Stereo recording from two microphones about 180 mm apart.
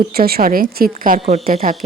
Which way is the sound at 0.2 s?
60° right (ahead or behind).